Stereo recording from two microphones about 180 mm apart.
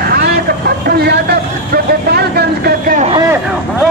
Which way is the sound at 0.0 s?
60° right (ahead or behind).